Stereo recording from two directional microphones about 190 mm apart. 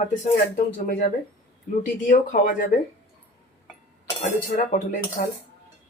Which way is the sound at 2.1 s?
45° left (ahead or behind).